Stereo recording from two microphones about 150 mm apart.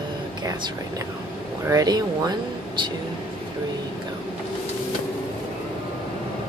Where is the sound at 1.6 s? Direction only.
25° right (ahead or behind).